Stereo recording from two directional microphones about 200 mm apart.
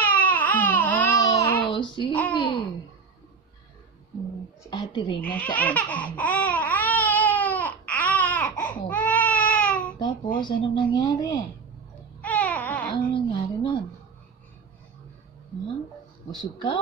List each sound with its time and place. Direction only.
0.0 s baby cry: 10° left (ahead or behind)
1.6 s child singing: 25° left (ahead or behind)
2.3 s speech: 25° left (ahead or behind)
4.6 s a woman's voice: 20° left (ahead or behind)
5.2 s laughter: 5° left (ahead or behind)
8.8 s baby cry: 10° left (ahead or behind)
10.4 s speech: 25° left (ahead or behind)
12.2 s music: 10° left (ahead or behind)
12.9 s speech: 25° left (ahead or behind)
16.3 s speech: 20° left (ahead or behind)